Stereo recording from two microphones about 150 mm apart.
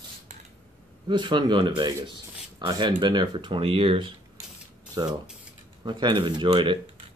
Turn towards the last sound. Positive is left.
turn(degrees=-35)  # may be behind; listen again after turning